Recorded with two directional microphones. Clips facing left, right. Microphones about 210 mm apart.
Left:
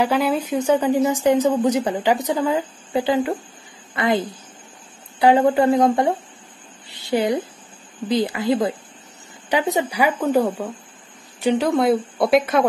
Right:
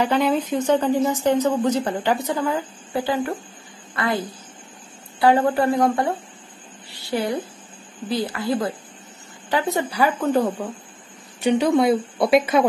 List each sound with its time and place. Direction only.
0.0 s a woman's voice: 5° left (ahead or behind); by 4.2 s 20° left (ahead or behind)
5.2 s a woman's voice: 20° left (ahead or behind); by 12.6 s centre (ahead or behind)